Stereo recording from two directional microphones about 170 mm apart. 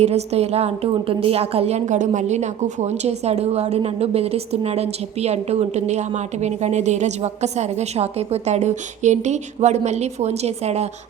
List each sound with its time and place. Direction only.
0.0 s a woman's voice: 40° right (ahead or behind)